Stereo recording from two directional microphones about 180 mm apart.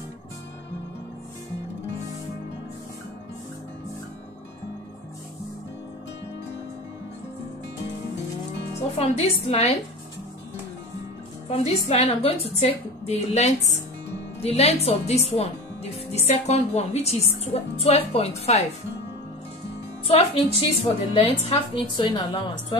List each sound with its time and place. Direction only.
8.9 s speech: 35° left (ahead or behind)
11.4 s speech: 35° left (ahead or behind)
20.2 s a woman's voice: 35° left (ahead or behind)